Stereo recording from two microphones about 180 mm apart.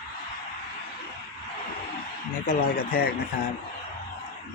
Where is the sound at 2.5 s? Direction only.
50° left (ahead or behind).